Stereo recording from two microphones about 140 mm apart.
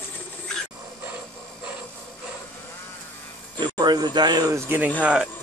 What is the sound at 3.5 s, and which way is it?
Speech, 30° right (ahead or behind).